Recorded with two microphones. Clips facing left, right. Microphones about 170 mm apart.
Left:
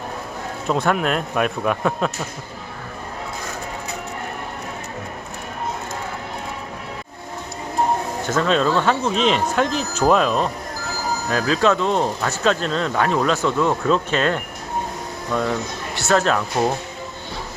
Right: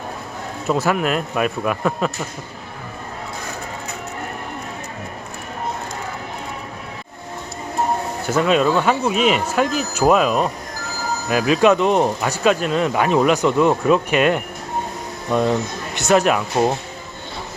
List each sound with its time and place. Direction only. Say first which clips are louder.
0.7 s a man's voice: right 1 dB; centre (ahead or behind)
8.3 s speech: right 2 dB; 10° right (ahead or behind)